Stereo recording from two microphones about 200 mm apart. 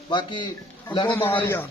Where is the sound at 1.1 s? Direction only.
10° left (ahead or behind).